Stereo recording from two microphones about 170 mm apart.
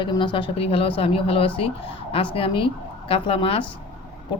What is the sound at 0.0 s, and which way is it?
Speech, 30° left (ahead or behind).